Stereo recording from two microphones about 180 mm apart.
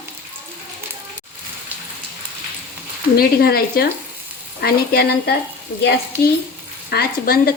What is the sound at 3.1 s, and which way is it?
Speech, 60° left (ahead or behind).